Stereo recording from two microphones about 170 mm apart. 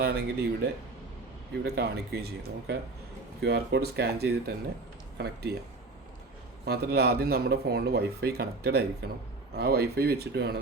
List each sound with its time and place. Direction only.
0.0 s speech: 70° right (ahead or behind)
6.7 s speech: 70° right (ahead or behind)